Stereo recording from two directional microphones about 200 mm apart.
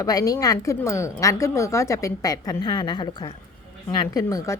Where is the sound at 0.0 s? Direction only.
15° left (ahead or behind).